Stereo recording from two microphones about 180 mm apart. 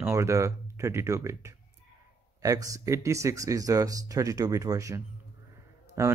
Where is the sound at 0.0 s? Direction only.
15° right (ahead or behind).